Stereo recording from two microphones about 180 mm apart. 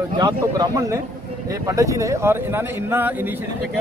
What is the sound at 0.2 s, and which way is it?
Speech, 20° right (ahead or behind).